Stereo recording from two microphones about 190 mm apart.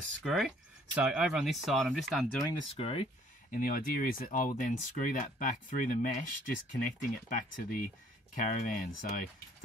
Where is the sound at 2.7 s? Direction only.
30° left (ahead or behind).